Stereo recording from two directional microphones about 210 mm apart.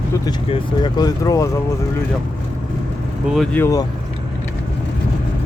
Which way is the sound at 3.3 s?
5° left (ahead or behind).